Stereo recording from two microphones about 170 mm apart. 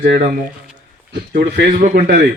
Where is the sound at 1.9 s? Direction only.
60° right (ahead or behind).